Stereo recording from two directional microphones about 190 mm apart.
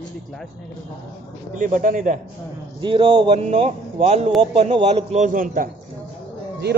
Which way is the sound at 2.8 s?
25° right (ahead or behind).